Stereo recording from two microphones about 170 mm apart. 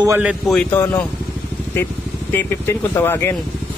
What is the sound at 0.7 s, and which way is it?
Speech, 15° left (ahead or behind).